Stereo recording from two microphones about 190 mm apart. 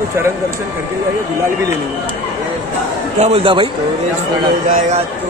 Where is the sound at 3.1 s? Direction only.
35° right (ahead or behind).